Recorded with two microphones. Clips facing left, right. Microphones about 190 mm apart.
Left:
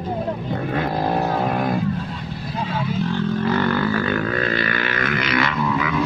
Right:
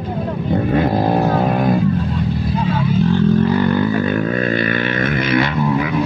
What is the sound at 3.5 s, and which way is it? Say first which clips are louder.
Didgeridoo: right 4 dB; 15° right (ahead or behind).